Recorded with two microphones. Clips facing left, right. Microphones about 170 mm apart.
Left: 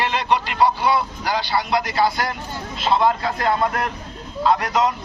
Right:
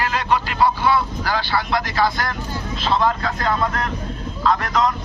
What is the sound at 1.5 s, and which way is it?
Speech, 25° left (ahead or behind).